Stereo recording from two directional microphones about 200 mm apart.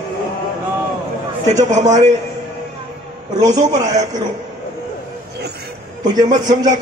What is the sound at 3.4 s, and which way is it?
Speech, 20° right (ahead or behind).